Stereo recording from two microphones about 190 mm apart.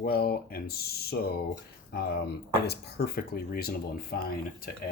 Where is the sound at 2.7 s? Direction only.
55° left (ahead or behind).